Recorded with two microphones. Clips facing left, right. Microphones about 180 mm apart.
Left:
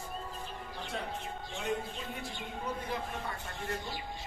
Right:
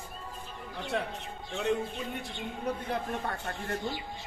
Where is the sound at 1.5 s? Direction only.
65° right (ahead or behind).